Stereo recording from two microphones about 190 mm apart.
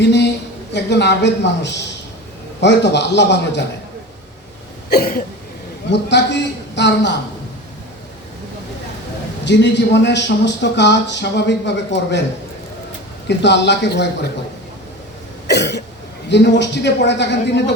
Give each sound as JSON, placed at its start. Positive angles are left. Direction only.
{"t": 0.0, "sound": "a woman's voice", "side_deg": 65}
{"t": 4.9, "sound": "a sound", "side_deg": 50}
{"t": 5.9, "sound": "a man's voice", "side_deg": 65}
{"t": 9.4, "sound": "a man's voice", "side_deg": 65}
{"t": 13.2, "sound": "a man's voice", "side_deg": 65}
{"t": 15.4, "sound": "cough", "side_deg": 60}
{"t": 16.3, "sound": "a man's voice", "side_deg": 65}